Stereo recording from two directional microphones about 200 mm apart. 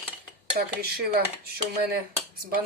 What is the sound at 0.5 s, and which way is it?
Speech, 40° right (ahead or behind).